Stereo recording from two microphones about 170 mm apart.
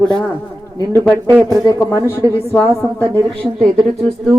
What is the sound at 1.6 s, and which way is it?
Speech, 20° left (ahead or behind).